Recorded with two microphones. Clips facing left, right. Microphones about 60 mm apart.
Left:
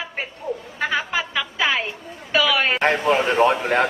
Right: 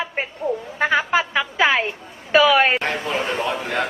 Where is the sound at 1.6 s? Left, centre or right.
Right.